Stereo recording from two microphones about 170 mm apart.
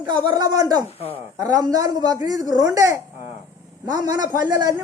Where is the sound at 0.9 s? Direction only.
35° left (ahead or behind).